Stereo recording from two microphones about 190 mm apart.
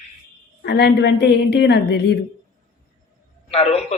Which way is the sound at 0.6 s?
60° left (ahead or behind).